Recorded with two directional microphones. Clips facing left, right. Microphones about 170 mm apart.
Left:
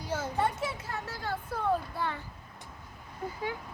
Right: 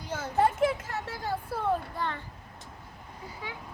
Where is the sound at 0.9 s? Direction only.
55° right (ahead or behind).